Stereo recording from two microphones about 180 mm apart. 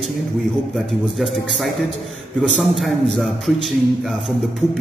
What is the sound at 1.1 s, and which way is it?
A man's voice, centre (ahead or behind).